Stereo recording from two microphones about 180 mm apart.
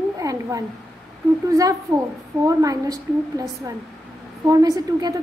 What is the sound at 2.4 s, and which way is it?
A woman's voice, 20° right (ahead or behind).